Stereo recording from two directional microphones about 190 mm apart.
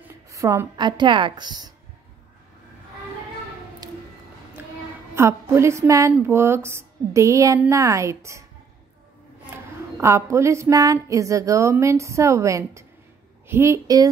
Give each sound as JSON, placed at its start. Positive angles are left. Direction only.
{"t": 0.3, "sound": "a woman's voice", "side_deg": -15}
{"t": 3.8, "sound": "music", "side_deg": -20}
{"t": 4.6, "sound": "a sound", "side_deg": -10}
{"t": 5.1, "sound": "speech", "side_deg": -15}
{"t": 9.9, "sound": "speech", "side_deg": -15}